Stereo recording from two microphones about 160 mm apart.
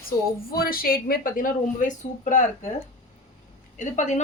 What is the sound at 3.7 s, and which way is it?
Speech, 50° left (ahead or behind).